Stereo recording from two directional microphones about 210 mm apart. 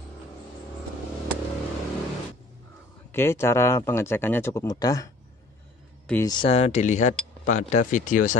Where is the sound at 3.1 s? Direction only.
10° left (ahead or behind).